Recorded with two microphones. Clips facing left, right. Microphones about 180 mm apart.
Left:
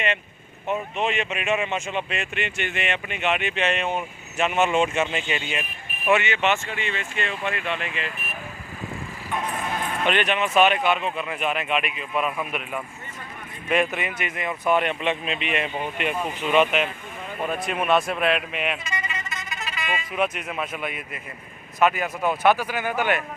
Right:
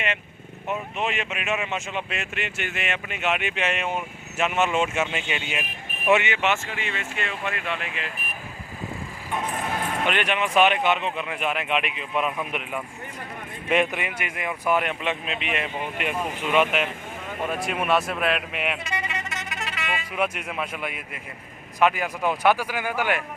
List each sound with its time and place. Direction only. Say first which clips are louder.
0.7 s speech: left 3 dB; 5° right (ahead or behind)
6.1 s speech: even; 15° right (ahead or behind)
10.1 s speech: left 3 dB; 10° right (ahead or behind)
12.1 s speech: even; 5° left (ahead or behind)
12.5 s speech: even; 20° right (ahead or behind)
18.9 s music: right 2 dB; 65° right (ahead or behind)
20.1 s speech: left 1 dB; 10° right (ahead or behind)